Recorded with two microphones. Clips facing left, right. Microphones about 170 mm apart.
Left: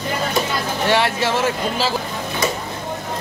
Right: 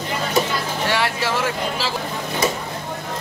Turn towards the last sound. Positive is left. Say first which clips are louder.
# left 4 dB
turn(degrees=25)  # may be behind; listen again after turning